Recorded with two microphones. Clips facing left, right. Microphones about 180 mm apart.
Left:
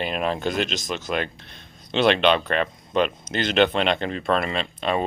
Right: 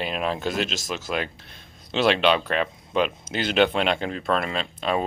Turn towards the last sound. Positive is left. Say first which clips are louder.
# left 1 dB
turn(degrees=0)  # may be behind; listen again after turning